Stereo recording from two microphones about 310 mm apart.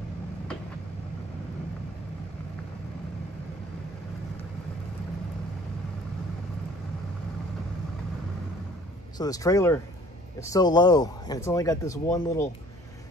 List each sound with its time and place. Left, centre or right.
9.2 s speech: centre